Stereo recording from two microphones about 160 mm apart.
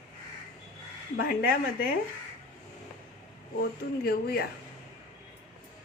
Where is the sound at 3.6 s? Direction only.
70° left (ahead or behind).